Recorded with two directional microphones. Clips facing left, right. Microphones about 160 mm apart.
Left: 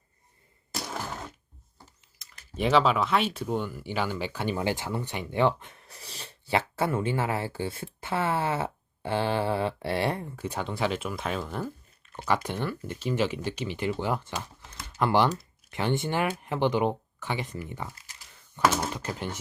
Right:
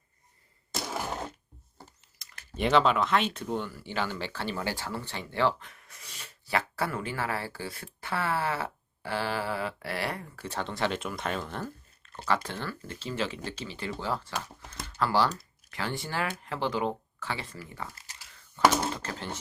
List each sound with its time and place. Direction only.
0.9 s a sound: 10° right (ahead or behind)
2.1 s speech: centre (ahead or behind); by 10.4 s 25° left (ahead or behind)
10.4 s speech: 10° left (ahead or behind)
14.8 s typing: 20° left (ahead or behind)
15.7 s speech: 20° left (ahead or behind)